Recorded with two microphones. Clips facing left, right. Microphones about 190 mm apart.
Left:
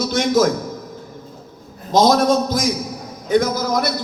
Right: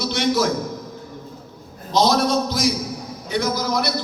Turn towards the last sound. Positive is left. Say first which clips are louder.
# left 2 dB
turn(degrees=45)  # may be behind; listen again after turning